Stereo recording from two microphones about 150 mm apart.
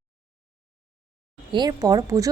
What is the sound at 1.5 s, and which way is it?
Speech, 25° right (ahead or behind).